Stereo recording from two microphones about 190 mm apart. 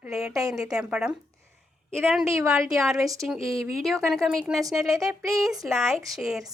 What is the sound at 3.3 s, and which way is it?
A woman's voice, centre (ahead or behind).